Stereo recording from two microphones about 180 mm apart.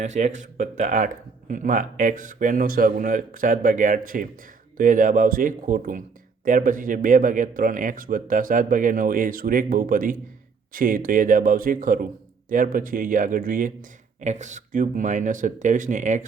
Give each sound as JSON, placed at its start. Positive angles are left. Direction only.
{"t": 0.0, "sound": "speech", "side_deg": -40}